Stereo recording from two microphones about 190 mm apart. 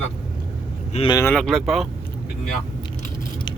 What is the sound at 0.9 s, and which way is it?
Speech, 25° left (ahead or behind).